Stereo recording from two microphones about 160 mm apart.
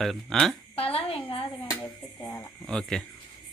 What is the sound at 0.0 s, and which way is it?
Speech, centre (ahead or behind).